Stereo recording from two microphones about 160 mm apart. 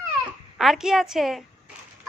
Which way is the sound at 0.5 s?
Centre (ahead or behind).